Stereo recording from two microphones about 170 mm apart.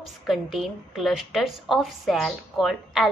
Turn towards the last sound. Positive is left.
turn(degrees=0)  # may be behind; listen again after turning